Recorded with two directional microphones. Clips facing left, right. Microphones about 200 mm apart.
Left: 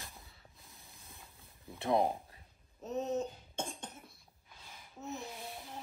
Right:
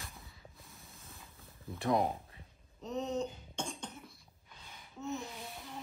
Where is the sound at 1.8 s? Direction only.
30° left (ahead or behind).